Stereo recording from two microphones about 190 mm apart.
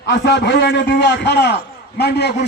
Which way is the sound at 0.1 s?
70° left (ahead or behind).